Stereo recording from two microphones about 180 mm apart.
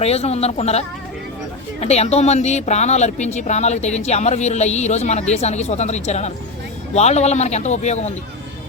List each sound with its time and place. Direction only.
0.0 s speech: 35° left (ahead or behind)